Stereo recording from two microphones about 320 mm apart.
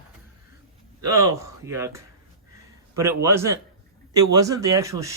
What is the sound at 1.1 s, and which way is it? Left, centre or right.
Speech, centre.